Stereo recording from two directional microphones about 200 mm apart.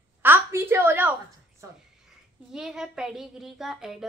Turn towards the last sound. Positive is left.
turn(degrees=0)  # may be behind; listen again after turning